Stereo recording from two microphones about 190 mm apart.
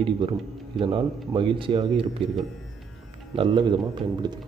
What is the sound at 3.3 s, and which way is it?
Speech, 25° right (ahead or behind).